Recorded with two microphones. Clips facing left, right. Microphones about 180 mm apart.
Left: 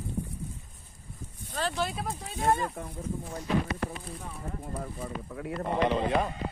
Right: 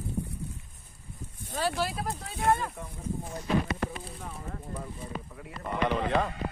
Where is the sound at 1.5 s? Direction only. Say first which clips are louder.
Right 1 dB; 10° right (ahead or behind).